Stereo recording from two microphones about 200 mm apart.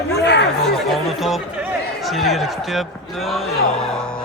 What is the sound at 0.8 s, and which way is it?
Speech, centre (ahead or behind).